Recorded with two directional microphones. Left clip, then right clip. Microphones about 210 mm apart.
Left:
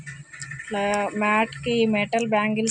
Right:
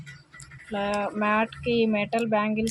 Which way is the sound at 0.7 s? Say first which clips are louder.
Left 3 dB; 10° left (ahead or behind).